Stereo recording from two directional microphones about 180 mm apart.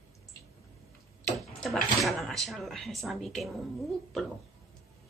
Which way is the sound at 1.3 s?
Centre (ahead or behind).